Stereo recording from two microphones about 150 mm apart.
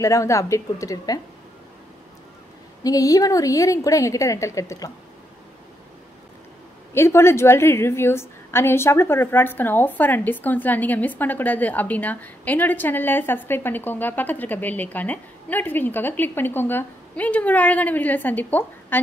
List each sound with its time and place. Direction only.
0.0 s a woman's voice: 20° left (ahead or behind)
2.8 s a woman's voice: 25° left (ahead or behind)
6.9 s a woman's voice: 15° left (ahead or behind)